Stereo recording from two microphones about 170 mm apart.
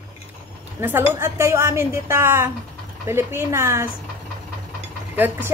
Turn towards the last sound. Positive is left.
turn(degrees=-10)  # may be behind; listen again after turning